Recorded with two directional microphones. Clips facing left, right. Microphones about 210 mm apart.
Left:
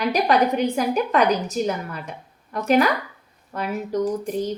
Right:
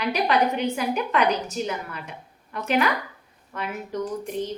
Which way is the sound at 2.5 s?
40° left (ahead or behind).